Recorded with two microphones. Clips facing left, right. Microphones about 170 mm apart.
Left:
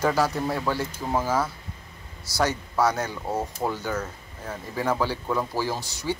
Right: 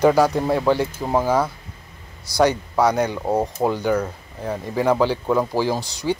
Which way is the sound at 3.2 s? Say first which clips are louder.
Right 7 dB; 35° right (ahead or behind).